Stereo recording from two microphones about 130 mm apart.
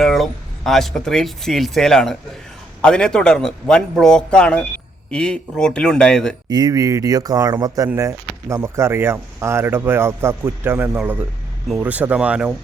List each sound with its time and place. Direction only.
0.0 s a man's voice: centre (ahead or behind)
6.5 s speech: 30° right (ahead or behind); by 12.5 s 10° right (ahead or behind)